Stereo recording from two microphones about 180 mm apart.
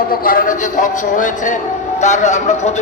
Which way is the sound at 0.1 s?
50° left (ahead or behind).